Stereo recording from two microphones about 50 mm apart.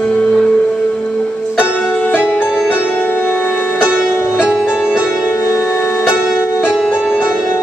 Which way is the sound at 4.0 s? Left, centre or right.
Left.